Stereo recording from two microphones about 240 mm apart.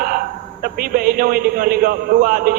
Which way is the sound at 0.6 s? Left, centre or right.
Right.